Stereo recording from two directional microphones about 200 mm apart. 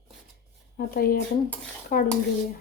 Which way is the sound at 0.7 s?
50° left (ahead or behind).